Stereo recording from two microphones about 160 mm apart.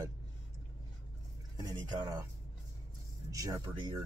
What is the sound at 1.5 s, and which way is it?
Speech, 25° right (ahead or behind).